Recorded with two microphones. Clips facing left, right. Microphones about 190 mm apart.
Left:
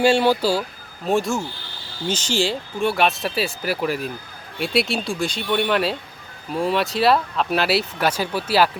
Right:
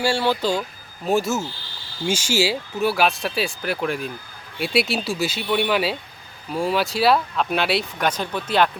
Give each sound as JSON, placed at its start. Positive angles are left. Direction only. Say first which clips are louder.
{"t": 0.0, "sound": "speech", "louder": "left 5 dB", "side_deg": 20}
{"t": 1.0, "sound": "speech", "louder": "even", "side_deg": 0}